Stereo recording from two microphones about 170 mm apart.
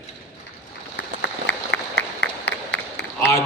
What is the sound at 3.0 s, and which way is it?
Run, 85° left.